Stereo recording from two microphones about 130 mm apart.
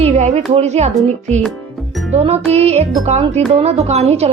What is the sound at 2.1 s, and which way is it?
A woman's voice, 55° right (ahead or behind).